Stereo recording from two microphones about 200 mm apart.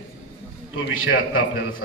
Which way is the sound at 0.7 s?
80° left.